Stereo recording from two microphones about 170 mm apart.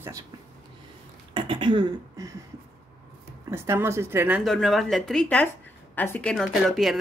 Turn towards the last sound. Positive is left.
turn(degrees=0)  # may be behind; listen again after turning